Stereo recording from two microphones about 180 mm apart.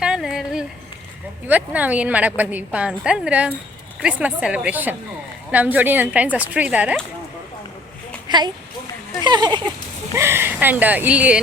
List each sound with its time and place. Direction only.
0.0 s a sound: 5° right (ahead or behind)
1.5 s a woman's voice: 10° right (ahead or behind)
8.3 s a woman's voice: 25° right (ahead or behind); by 11.3 s 5° right (ahead or behind)